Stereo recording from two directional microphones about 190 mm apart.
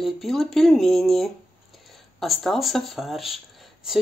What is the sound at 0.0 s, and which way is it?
Speech, centre (ahead or behind).